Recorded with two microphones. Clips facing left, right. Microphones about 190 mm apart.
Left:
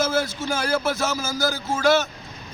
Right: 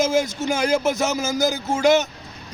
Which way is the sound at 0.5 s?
15° right (ahead or behind).